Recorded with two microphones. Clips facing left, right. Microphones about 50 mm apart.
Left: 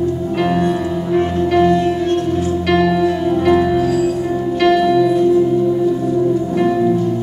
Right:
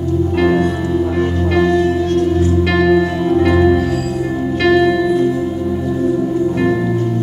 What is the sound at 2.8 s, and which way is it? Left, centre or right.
Music, centre.